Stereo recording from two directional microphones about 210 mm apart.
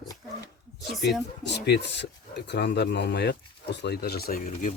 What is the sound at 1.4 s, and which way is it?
Speech, 55° left (ahead or behind).